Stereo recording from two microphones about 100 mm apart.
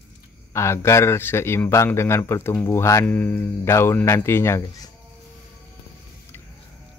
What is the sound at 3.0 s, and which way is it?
A man's voice, 20° left (ahead or behind).